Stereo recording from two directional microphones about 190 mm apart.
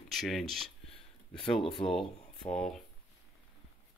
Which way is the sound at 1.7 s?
25° left (ahead or behind).